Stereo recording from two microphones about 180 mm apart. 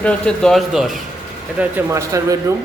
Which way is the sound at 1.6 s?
15° right (ahead or behind).